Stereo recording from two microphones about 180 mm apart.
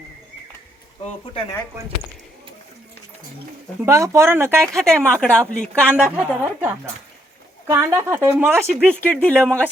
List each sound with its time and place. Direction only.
1.2 s speech: 30° left (ahead or behind)
3.8 s speech: 15° right (ahead or behind)
4.6 s a woman's voice: 5° left (ahead or behind)
5.9 s speech: 10° right (ahead or behind)
7.7 s speech: 15° right (ahead or behind)
8.6 s a woman's voice: 5° left (ahead or behind)